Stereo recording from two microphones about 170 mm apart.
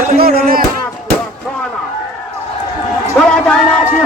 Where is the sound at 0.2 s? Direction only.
60° right (ahead or behind).